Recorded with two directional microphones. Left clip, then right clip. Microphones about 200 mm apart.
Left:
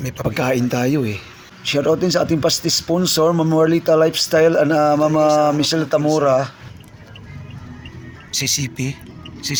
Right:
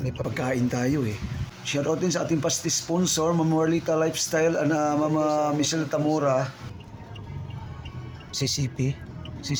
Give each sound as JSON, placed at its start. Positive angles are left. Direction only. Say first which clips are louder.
{"t": 0.2, "sound": "speech", "louder": "left 9 dB", "side_deg": 25}
{"t": 8.3, "sound": "speech", "louder": "left 8 dB", "side_deg": -15}